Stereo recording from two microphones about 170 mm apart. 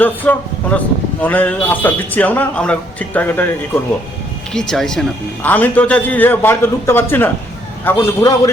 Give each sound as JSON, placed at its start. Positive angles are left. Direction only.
{"t": 0.0, "sound": "speech", "side_deg": 10}
{"t": 4.5, "sound": "speech", "side_deg": 5}